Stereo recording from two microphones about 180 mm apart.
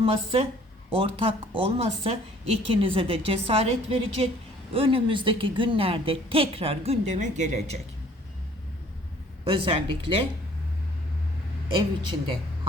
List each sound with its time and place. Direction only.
0.0 s a woman's voice: 30° right (ahead or behind)
9.4 s a woman's voice: 30° right (ahead or behind)